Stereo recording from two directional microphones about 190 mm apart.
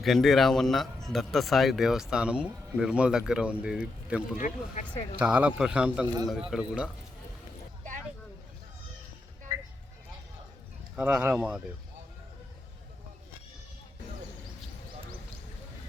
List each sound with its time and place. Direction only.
0.0 s a man's voice: centre (ahead or behind)
4.4 s speech: 40° left (ahead or behind)
5.2 s a man's voice: 5° right (ahead or behind)
10.9 s a man's voice: 5° right (ahead or behind)